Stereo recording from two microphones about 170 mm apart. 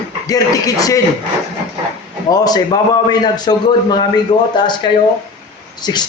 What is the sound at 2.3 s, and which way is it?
Speech, 20° left (ahead or behind).